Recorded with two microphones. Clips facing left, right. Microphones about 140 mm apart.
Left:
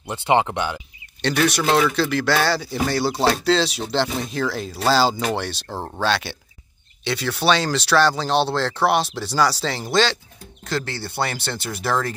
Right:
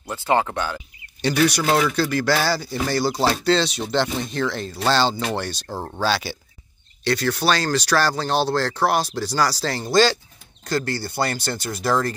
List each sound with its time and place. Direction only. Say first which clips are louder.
0.0 s speech: left 2 dB; 20° left (ahead or behind)
1.2 s speech: right 1 dB; 5° right (ahead or behind)